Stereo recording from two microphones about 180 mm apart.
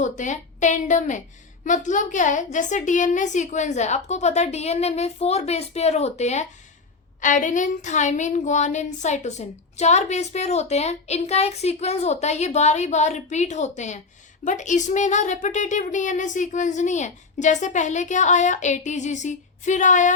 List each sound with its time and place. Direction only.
0.0 s a child's voice: 40° left (ahead or behind)